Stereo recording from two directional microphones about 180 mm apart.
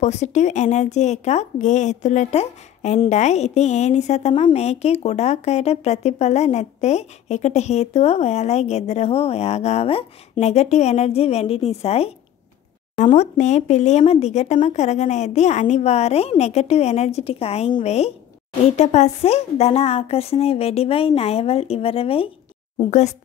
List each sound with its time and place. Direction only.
0.0 s speech: 40° left (ahead or behind)